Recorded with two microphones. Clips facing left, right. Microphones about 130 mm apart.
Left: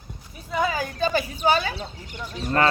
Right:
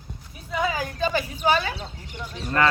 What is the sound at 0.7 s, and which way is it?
A woman's voice, 30° left (ahead or behind).